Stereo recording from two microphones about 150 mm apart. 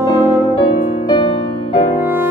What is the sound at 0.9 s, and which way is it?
Music, 30° left (ahead or behind).